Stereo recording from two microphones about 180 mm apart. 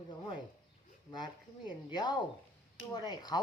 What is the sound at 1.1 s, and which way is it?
Speech, 25° left (ahead or behind).